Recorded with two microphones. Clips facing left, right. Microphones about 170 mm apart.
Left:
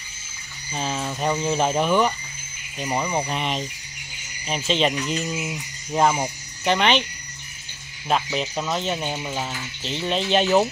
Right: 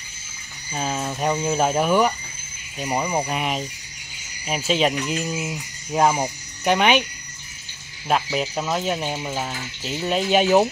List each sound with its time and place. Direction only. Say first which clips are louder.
0.7 s speech: right 1 dB; 5° right (ahead or behind)
8.1 s speech: right 1 dB; 5° right (ahead or behind)